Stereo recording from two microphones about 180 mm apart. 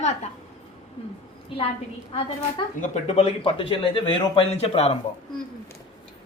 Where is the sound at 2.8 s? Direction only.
40° left (ahead or behind).